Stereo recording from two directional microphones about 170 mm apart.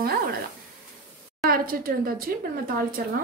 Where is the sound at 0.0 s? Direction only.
65° right (ahead or behind).